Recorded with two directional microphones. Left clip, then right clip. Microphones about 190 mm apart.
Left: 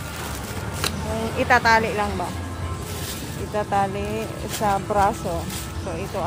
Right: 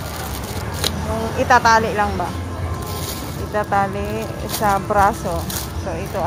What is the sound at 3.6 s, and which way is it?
Speech, 15° left (ahead or behind).